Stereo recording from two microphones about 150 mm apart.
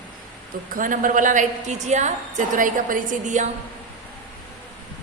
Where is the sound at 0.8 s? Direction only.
65° right (ahead or behind).